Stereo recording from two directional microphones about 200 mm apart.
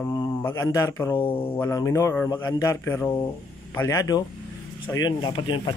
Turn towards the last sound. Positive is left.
turn(degrees=20)  # may be behind; listen again after turning